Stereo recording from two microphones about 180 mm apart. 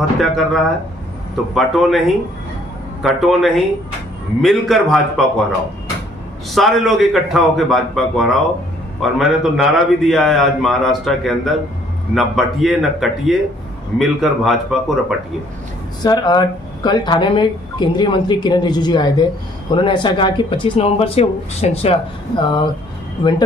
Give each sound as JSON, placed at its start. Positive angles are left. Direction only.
{"t": 0.2, "sound": "a man's voice", "side_deg": 0}
{"t": 6.5, "sound": "a man's voice", "side_deg": 0}
{"t": 16.0, "sound": "speech", "side_deg": 25}